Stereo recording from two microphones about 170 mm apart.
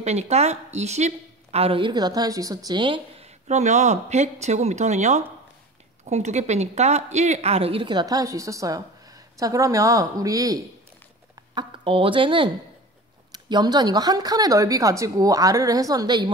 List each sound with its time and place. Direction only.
0.0 s a woman's voice: 40° right (ahead or behind); by 16.3 s 25° right (ahead or behind)